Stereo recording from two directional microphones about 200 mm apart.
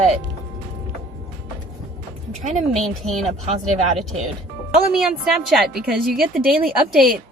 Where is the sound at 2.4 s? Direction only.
40° right (ahead or behind).